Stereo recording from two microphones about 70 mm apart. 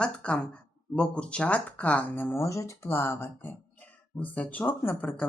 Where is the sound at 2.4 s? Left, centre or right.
Left.